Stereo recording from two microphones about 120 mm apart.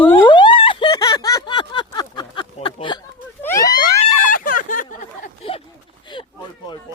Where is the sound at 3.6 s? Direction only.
35° left (ahead or behind).